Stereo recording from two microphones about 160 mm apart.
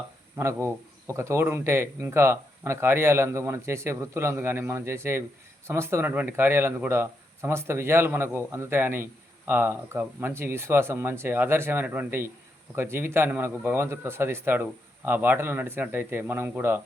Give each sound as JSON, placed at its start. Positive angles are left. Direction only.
{"t": 0.3, "sound": "speech", "side_deg": -20}